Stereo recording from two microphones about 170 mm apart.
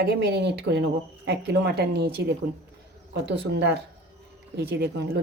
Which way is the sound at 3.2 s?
90° right.